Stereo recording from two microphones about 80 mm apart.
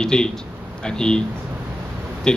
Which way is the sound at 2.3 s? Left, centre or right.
Centre.